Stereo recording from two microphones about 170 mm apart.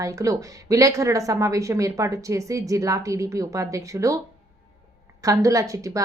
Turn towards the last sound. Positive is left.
turn(degrees=-20)  # may be behind; listen again after turning